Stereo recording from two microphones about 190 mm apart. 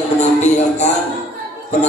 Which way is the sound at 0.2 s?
35° left (ahead or behind).